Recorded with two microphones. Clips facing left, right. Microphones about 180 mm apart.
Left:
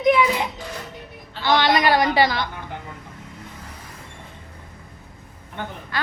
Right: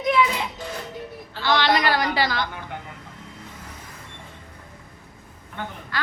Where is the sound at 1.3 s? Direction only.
20° left (ahead or behind).